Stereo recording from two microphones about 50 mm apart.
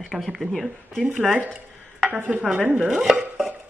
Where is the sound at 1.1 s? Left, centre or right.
Right.